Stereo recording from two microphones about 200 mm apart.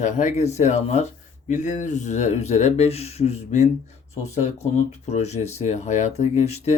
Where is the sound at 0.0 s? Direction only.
35° left (ahead or behind).